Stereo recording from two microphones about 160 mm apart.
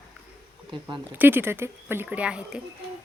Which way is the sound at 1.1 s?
10° right (ahead or behind).